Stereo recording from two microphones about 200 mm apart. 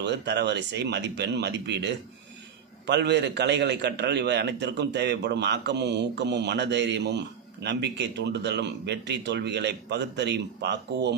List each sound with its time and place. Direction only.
0.0 s a man's voice: 60° right (ahead or behind)